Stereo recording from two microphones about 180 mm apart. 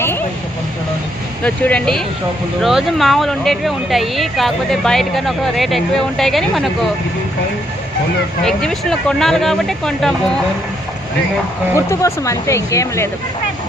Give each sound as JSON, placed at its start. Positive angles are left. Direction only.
{"t": 1.5, "sound": "speech", "side_deg": 5}
{"t": 8.4, "sound": "speech", "side_deg": 0}
{"t": 11.9, "sound": "speech", "side_deg": 15}